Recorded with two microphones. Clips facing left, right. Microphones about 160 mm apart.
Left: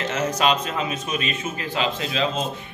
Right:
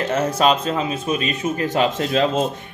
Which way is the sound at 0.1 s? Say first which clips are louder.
Right 4 dB; 35° right (ahead or behind).